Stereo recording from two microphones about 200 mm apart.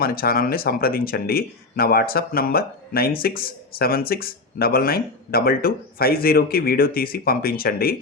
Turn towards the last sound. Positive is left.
turn(degrees=50)  # may be behind; listen again after turning